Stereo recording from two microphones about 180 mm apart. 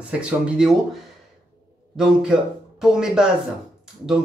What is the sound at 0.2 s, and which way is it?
Speech, 5° right (ahead or behind).